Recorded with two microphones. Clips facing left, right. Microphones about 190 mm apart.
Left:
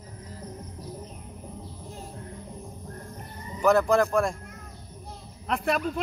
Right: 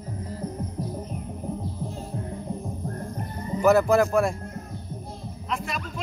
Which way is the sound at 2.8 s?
50° right (ahead or behind).